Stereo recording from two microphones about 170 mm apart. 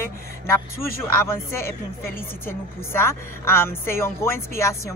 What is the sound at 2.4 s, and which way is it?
A woman's voice, 15° left (ahead or behind).